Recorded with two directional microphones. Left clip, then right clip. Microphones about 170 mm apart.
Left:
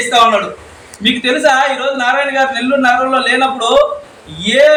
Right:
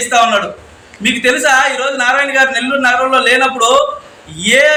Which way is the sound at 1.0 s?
5° right (ahead or behind).